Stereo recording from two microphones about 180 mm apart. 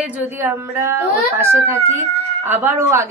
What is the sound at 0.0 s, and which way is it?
Speech, 10° right (ahead or behind).